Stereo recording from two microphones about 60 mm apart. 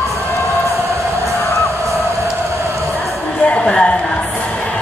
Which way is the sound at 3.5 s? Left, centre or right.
Centre.